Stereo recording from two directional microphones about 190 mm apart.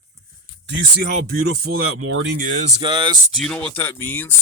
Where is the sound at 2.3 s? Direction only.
40° right (ahead or behind).